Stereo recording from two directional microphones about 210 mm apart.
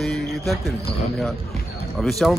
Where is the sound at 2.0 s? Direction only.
Centre (ahead or behind).